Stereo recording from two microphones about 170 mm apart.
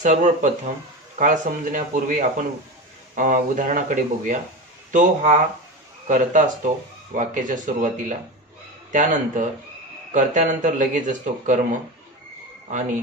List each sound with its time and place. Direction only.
0.0 s speech: 45° right (ahead or behind)